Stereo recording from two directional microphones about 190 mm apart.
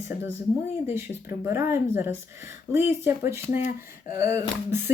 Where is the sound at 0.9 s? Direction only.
15° right (ahead or behind).